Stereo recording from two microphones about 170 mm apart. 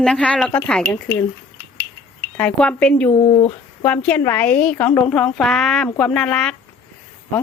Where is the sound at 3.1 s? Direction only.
30° left (ahead or behind).